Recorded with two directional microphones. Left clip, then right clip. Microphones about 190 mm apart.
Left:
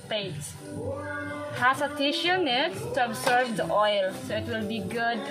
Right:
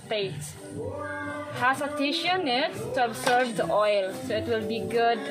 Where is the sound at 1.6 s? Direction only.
20° right (ahead or behind).